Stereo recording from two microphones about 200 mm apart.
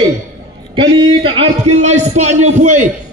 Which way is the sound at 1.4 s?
35° right (ahead or behind).